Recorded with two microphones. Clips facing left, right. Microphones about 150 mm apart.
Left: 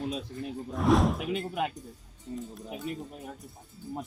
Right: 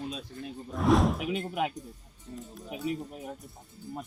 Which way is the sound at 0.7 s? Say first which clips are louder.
Even; centre (ahead or behind).